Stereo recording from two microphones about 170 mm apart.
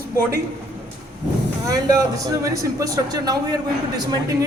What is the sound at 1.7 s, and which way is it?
Speech, 20° right (ahead or behind).